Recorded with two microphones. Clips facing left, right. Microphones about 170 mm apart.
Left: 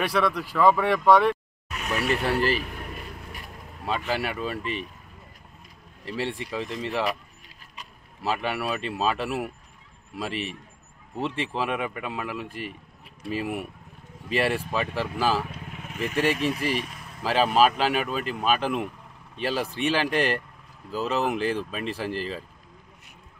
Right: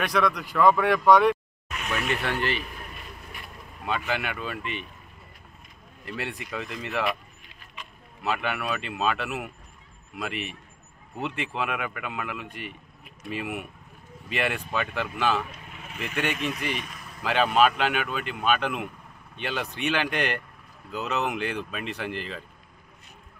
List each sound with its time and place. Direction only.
0.0 s speech: 5° left (ahead or behind)
1.7 s speech: 35° left (ahead or behind)
6.0 s speech: 30° left (ahead or behind)